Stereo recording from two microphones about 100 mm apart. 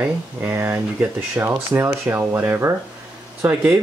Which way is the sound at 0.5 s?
20° right (ahead or behind).